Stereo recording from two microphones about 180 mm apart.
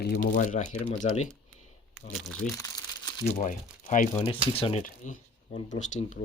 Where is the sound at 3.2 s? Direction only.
40° left (ahead or behind).